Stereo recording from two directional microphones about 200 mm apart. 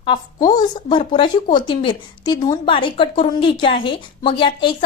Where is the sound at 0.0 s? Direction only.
20° left (ahead or behind).